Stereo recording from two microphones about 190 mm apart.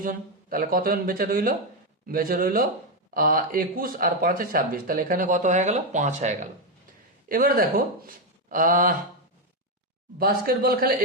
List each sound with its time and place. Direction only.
0.0 s speech: 50° right (ahead or behind)
10.2 s speech: 50° right (ahead or behind)